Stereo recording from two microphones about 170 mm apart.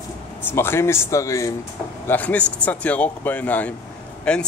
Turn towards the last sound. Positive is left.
turn(degrees=5)  # may be behind; listen again after turning